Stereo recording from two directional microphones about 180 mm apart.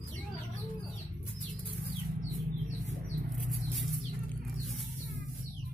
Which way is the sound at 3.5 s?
Centre (ahead or behind).